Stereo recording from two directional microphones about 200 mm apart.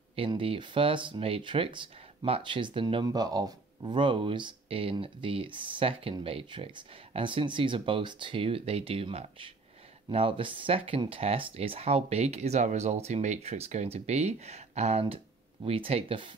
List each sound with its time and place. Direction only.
0.1 s speech: 25° right (ahead or behind)